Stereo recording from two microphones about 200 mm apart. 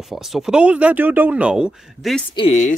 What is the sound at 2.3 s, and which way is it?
Speech, 25° left (ahead or behind).